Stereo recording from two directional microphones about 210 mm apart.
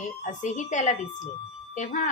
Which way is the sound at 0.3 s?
35° left (ahead or behind).